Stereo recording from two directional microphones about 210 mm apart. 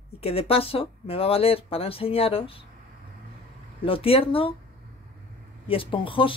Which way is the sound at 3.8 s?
25° left (ahead or behind).